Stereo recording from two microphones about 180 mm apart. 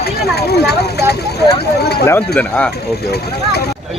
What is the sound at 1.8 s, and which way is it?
Speech, 65° left (ahead or behind).